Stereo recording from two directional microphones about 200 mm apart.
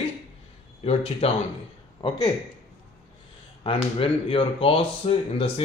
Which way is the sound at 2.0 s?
20° left (ahead or behind).